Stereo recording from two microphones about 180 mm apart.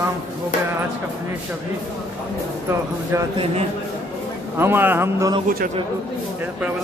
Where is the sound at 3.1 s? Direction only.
15° right (ahead or behind).